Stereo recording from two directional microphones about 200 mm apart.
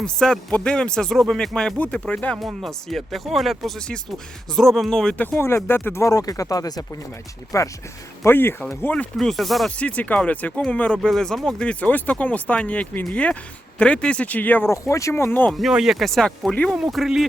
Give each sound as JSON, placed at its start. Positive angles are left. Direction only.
{"t": 0.0, "sound": "speech", "side_deg": 5}